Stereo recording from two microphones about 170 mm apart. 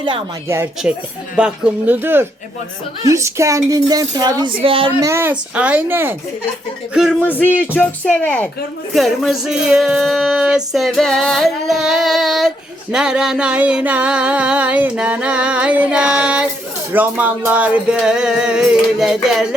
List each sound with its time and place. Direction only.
0.4 s music: 15° right (ahead or behind)
3.0 s speech: 15° right (ahead or behind)
4.9 s music: 15° right (ahead or behind)
7.3 s speech: 10° left (ahead or behind)
8.9 s music: centre (ahead or behind)